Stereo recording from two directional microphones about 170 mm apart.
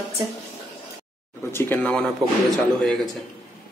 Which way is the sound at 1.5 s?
10° left (ahead or behind).